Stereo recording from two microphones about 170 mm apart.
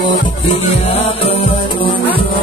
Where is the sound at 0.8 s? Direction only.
35° left (ahead or behind).